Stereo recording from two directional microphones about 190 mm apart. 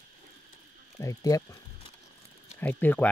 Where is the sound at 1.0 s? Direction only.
15° left (ahead or behind).